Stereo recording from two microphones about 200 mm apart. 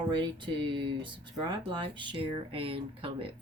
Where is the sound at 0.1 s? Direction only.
25° right (ahead or behind).